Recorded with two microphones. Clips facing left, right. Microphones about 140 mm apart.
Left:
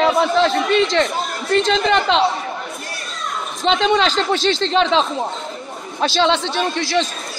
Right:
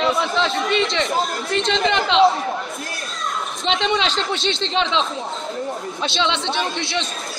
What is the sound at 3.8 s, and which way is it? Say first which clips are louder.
Speech: left 5 dB; 40° left (ahead or behind).